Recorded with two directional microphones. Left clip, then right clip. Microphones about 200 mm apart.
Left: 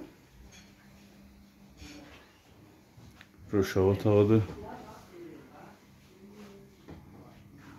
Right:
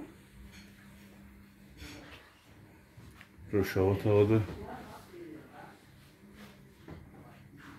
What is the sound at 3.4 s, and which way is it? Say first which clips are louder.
Speech: left 3 dB; 30° left (ahead or behind).